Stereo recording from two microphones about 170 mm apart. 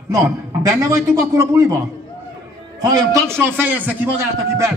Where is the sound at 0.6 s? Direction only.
20° right (ahead or behind).